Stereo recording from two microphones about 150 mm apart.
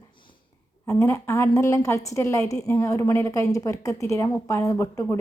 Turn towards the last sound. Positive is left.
turn(degrees=20)  # may be behind; listen again after turning